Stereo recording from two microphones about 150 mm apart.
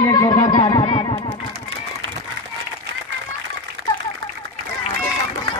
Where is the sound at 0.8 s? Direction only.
40° left (ahead or behind).